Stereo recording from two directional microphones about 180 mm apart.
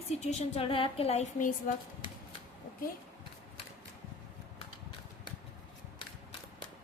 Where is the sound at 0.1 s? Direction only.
40° left (ahead or behind).